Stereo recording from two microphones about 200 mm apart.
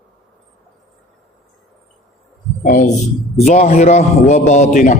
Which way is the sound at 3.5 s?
35° left (ahead or behind).